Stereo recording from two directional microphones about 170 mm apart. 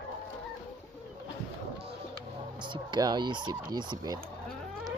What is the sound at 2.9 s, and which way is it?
Fowl, 25° right (ahead or behind).